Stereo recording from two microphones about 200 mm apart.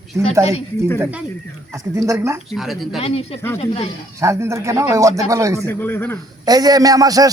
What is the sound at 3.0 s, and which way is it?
Speech, 30° left (ahead or behind).